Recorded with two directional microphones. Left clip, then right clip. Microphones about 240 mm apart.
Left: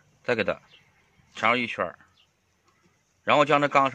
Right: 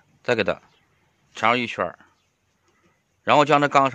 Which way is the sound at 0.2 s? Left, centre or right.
Right.